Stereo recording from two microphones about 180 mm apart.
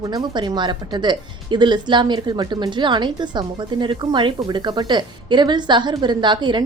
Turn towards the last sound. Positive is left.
turn(degrees=-25)  # may be behind; listen again after turning